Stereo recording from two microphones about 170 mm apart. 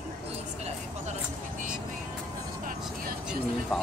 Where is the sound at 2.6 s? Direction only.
60° right (ahead or behind).